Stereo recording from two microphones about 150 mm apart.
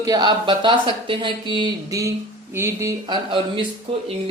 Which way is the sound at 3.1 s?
35° right (ahead or behind).